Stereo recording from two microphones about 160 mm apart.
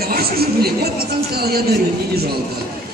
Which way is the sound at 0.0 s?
75° right (ahead or behind).